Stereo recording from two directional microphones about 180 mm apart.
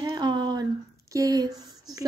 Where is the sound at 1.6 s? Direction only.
20° right (ahead or behind).